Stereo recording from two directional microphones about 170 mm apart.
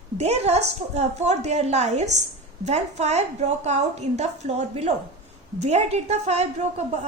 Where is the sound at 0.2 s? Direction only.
40° right (ahead or behind).